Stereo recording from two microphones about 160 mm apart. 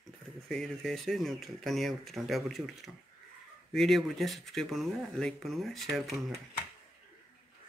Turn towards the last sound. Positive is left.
turn(degrees=0)  # may be behind; listen again after turning